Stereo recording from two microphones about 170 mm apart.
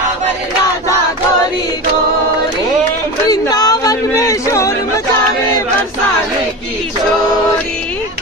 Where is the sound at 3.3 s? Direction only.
20° left (ahead or behind).